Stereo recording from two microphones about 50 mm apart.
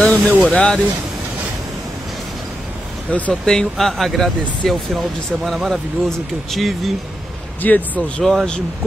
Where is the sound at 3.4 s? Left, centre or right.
Centre.